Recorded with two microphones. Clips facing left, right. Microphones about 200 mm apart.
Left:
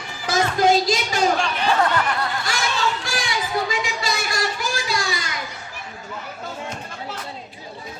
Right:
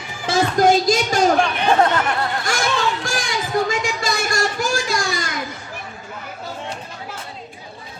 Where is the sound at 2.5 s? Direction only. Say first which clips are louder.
Right 4 dB; 45° right (ahead or behind).